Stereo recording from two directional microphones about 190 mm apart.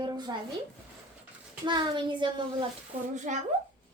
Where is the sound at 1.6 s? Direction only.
25° right (ahead or behind).